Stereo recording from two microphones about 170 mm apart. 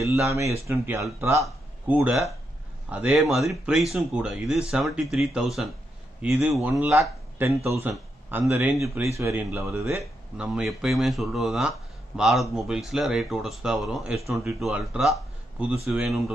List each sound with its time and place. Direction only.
0.0 s speech: 15° right (ahead or behind)